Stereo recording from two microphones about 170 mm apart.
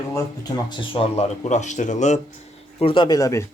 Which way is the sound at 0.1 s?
20° left (ahead or behind).